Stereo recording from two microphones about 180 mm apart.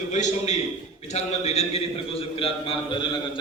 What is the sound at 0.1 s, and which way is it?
A man's voice, 40° left (ahead or behind).